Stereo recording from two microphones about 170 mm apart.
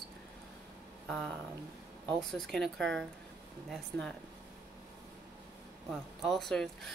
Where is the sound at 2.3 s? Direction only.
5° left (ahead or behind).